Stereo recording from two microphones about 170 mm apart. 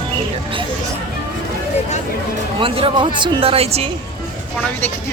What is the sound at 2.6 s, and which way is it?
Speech, 30° right (ahead or behind).